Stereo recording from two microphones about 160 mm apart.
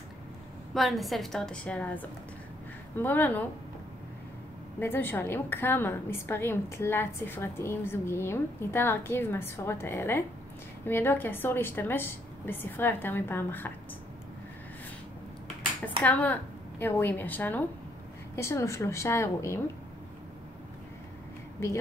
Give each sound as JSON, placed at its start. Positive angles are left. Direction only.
{"t": 0.7, "sound": "a woman's voice", "side_deg": 0}
{"t": 4.7, "sound": "a woman's voice", "side_deg": 15}
{"t": 16.0, "sound": "a woman's voice", "side_deg": 10}